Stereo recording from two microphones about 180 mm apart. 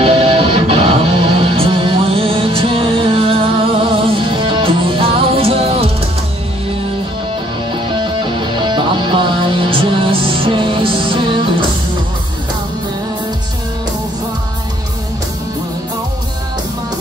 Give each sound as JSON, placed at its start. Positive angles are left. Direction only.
{"t": 0.0, "sound": "music", "side_deg": -30}
{"t": 7.9, "sound": "music", "side_deg": -25}